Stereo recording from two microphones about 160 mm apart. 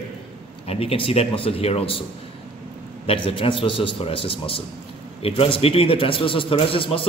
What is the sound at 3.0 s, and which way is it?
A man's voice, 35° left (ahead or behind).